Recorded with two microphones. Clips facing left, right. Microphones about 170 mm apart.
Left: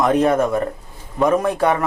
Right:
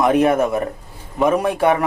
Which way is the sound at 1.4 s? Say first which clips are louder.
Right 1 dB; 25° right (ahead or behind).